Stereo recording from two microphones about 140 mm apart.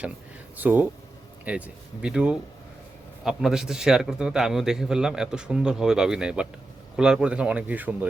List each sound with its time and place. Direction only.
0.5 s a man's voice: 15° right (ahead or behind)